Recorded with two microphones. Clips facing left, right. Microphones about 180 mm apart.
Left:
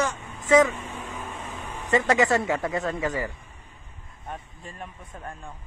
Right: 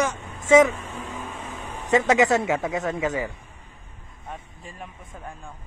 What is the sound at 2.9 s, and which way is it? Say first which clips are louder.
Speech: right 2 dB; 20° right (ahead or behind).